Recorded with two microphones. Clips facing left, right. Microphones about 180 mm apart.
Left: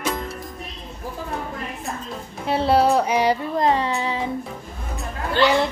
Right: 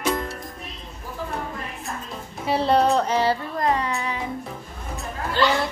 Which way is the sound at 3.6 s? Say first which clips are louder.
Left 4 dB; 30° left (ahead or behind).